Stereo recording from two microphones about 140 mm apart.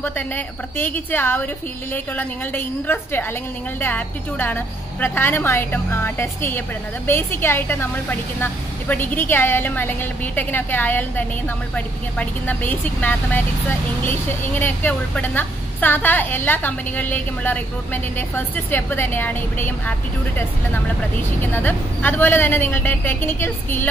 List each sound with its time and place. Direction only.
0.0 s a woman's voice: 15° left (ahead or behind)